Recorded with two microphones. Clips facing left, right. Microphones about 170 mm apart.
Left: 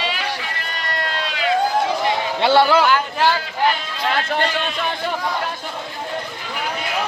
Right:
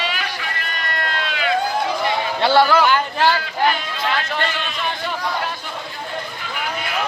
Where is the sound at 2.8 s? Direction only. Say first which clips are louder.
Even; 5° left (ahead or behind).